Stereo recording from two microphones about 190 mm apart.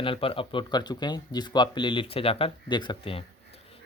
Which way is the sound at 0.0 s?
30° left (ahead or behind).